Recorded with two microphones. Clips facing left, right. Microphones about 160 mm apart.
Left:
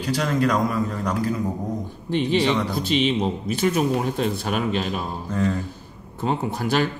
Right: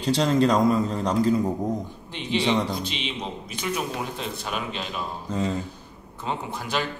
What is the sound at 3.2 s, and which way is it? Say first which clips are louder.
Speech: left 10 dB; 45° left (ahead or behind).